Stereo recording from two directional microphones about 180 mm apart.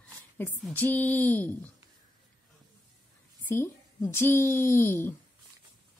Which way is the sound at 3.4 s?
10° left (ahead or behind).